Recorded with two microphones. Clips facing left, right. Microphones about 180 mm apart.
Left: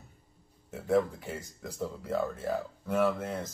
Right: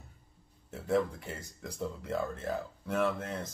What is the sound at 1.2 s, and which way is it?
Speech, centre (ahead or behind).